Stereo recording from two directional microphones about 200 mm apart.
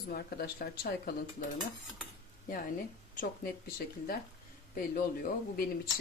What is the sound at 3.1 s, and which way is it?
Speech, 45° left (ahead or behind).